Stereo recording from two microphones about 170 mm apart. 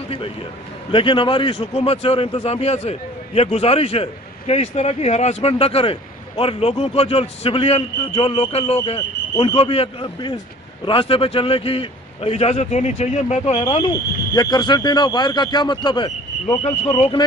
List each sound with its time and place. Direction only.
0.9 s a man's voice: 30° left (ahead or behind)
13.5 s speech: 25° left (ahead or behind)